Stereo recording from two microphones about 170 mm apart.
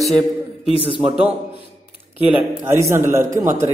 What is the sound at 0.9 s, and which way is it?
Speech, 30° right (ahead or behind).